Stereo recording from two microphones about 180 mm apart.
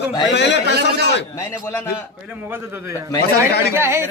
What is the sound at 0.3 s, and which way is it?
Speech, 75° left (ahead or behind).